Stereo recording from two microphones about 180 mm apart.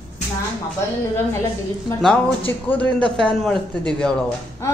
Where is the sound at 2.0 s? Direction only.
10° left (ahead or behind).